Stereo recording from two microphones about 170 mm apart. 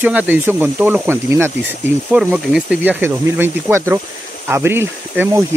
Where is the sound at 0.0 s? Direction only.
10° right (ahead or behind).